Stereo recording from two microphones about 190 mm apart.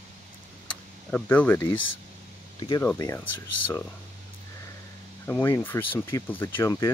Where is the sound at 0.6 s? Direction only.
5° left (ahead or behind).